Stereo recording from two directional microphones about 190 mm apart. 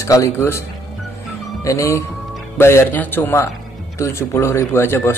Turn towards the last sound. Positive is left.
turn(degrees=10)  # may be behind; listen again after turning